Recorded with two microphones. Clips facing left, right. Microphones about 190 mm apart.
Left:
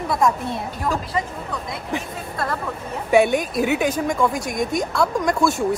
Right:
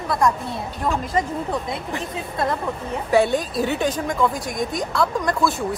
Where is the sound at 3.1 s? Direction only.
20° left (ahead or behind).